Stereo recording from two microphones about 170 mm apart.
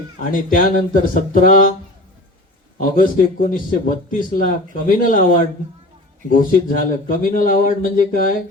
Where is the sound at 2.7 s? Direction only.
50° left (ahead or behind).